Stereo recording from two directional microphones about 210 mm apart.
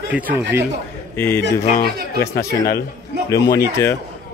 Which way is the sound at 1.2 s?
10° left (ahead or behind).